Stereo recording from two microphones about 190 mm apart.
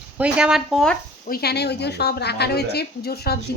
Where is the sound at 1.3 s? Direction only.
55° left (ahead or behind).